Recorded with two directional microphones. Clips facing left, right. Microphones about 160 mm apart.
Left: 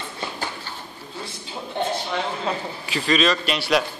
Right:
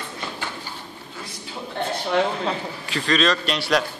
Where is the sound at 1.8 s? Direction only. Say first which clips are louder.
Left 2 dB; 15° left (ahead or behind).